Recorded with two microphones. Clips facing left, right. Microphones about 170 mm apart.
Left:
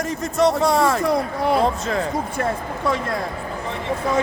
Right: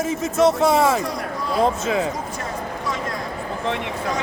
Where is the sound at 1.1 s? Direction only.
65° left (ahead or behind).